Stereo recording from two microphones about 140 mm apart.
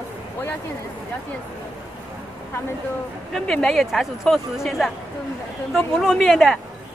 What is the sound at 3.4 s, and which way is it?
Speech, 5° left (ahead or behind).